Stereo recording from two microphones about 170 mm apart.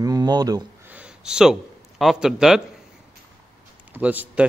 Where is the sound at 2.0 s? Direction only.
Centre (ahead or behind).